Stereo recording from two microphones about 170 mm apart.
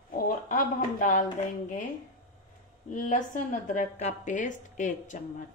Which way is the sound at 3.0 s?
45° left (ahead or behind).